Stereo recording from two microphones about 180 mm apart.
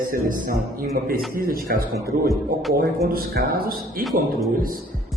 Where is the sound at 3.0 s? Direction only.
55° right (ahead or behind).